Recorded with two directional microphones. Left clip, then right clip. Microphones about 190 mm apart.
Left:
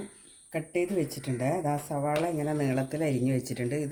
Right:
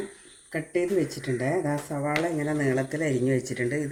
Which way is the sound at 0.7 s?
60° left (ahead or behind).